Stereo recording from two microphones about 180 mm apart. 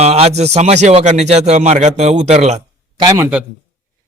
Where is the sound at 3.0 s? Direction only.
20° right (ahead or behind).